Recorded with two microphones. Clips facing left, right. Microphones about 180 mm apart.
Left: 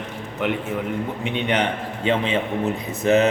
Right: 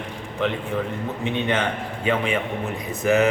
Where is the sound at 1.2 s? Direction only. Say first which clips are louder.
Even; 15° left (ahead or behind).